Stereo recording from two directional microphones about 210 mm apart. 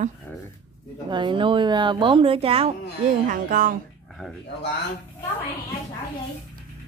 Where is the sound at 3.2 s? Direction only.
40° right (ahead or behind).